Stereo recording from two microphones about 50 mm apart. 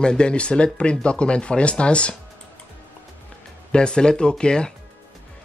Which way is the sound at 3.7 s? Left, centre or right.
Centre.